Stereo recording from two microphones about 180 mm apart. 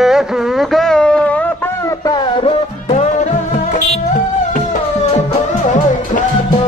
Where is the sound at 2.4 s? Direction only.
35° left (ahead or behind).